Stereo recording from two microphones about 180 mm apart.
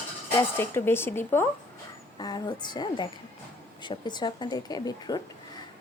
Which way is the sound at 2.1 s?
25° left (ahead or behind).